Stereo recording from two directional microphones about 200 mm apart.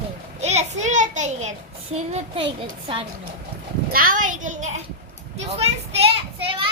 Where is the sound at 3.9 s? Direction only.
45° right (ahead or behind); by 6.7 s 25° right (ahead or behind).